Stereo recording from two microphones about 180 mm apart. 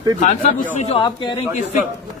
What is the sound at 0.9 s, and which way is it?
Speech, 25° left (ahead or behind).